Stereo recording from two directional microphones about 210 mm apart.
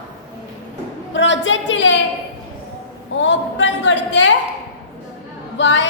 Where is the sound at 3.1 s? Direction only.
60° left (ahead or behind).